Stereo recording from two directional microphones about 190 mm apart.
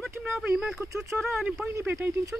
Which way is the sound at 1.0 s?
Centre (ahead or behind).